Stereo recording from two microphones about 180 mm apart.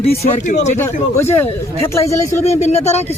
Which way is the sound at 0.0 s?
40° left (ahead or behind).